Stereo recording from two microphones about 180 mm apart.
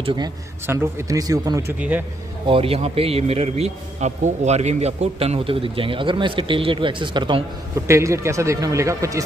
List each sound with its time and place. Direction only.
0.0 s a man's voice: 25° right (ahead or behind)
0.7 s speech: 15° right (ahead or behind)
1.8 s speech: 10° right (ahead or behind)
2.4 s a man's voice: 30° right (ahead or behind)
7.8 s speech: 15° right (ahead or behind)